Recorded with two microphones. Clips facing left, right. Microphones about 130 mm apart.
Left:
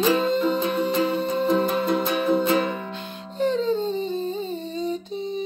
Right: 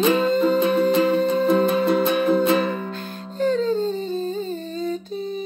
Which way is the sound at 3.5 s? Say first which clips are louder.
Right 2 dB; 20° left (ahead or behind).